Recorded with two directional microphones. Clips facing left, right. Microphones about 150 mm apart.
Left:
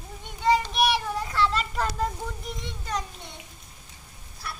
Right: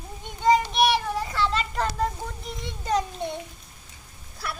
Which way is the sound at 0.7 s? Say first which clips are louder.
Right 2 dB; centre (ahead or behind).